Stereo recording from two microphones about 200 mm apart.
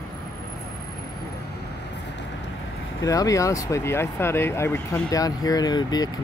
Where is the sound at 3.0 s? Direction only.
15° left (ahead or behind).